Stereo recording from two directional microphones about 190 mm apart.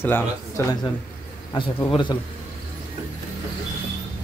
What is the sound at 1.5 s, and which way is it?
Speech, 25° left (ahead or behind).